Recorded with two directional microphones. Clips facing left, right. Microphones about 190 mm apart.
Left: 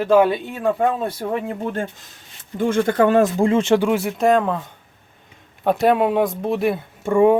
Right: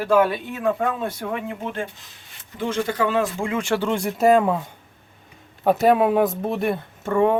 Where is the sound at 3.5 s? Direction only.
20° left (ahead or behind).